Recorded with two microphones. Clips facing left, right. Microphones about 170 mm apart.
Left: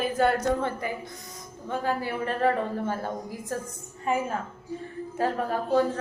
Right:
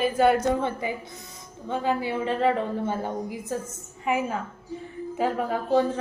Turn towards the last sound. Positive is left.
turn(degrees=-15)  # may be behind; listen again after turning